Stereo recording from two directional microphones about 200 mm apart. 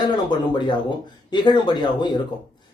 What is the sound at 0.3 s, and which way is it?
Speech, 20° left (ahead or behind).